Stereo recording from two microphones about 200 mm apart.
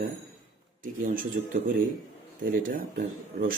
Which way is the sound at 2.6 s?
45° right (ahead or behind).